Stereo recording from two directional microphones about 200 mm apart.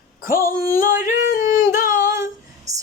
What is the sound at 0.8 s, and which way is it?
Yodeling, 40° left (ahead or behind).